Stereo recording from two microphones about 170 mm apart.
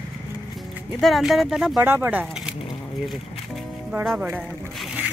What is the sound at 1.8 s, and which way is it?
Speech, 10° right (ahead or behind).